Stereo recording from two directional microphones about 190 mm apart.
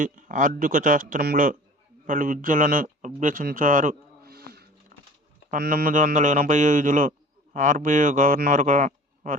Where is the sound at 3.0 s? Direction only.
45° right (ahead or behind).